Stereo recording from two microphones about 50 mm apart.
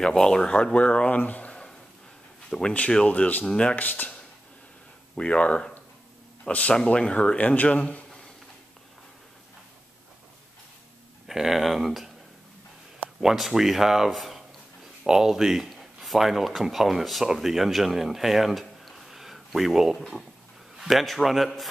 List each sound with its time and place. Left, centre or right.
0.0 s speech: centre
1.1 s speech: left
2.5 s speech: centre
3.1 s speech: left
3.4 s speech: centre
3.7 s speech: left
5.1 s speech: left
11.2 s speech: centre
13.2 s speech: centre